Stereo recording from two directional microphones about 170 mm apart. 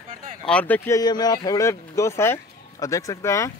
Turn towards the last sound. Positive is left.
turn(degrees=15)  # may be behind; listen again after turning